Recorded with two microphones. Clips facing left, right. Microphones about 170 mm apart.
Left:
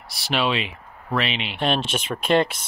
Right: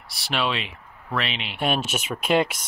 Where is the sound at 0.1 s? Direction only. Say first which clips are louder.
Left 3 dB; centre (ahead or behind).